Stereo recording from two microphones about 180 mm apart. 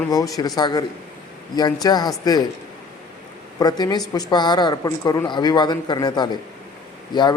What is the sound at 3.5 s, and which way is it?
A woman's voice, 20° left (ahead or behind).